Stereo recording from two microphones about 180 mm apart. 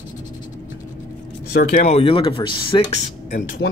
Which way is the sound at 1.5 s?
55° left (ahead or behind).